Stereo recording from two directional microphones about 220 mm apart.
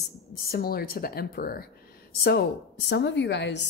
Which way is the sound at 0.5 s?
45° left (ahead or behind).